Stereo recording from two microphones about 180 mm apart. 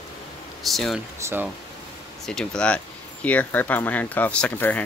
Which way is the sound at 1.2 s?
15° right (ahead or behind).